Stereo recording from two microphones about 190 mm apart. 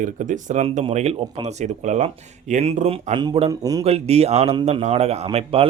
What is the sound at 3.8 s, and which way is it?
Speech, 35° right (ahead or behind).